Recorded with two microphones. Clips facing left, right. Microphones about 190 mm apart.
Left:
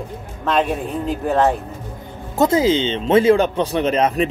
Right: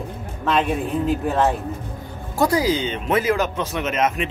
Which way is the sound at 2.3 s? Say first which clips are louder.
Left 4 dB; 25° left (ahead or behind).